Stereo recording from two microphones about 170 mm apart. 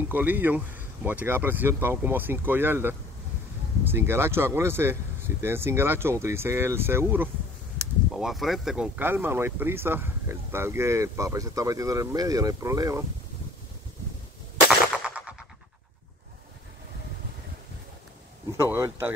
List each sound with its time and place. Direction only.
0.1 s speech: 10° right (ahead or behind)
8.1 s speech: centre (ahead or behind); by 13.0 s 20° right (ahead or behind)
15.0 s music: 5° right (ahead or behind)
18.5 s speech: 15° right (ahead or behind)